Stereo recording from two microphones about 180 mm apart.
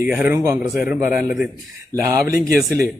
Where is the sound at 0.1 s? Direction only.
10° right (ahead or behind).